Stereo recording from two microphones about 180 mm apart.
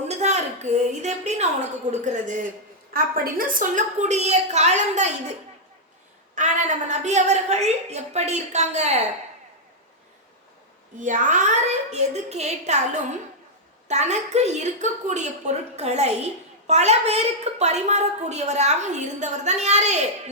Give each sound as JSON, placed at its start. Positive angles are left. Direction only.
{"t": 0.1, "sound": "a woman's voice", "side_deg": -40}
{"t": 6.3, "sound": "a woman's voice", "side_deg": -40}
{"t": 11.0, "sound": "a woman's voice", "side_deg": -45}